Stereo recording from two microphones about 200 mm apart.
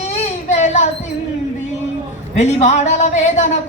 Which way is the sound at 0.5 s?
35° left (ahead or behind).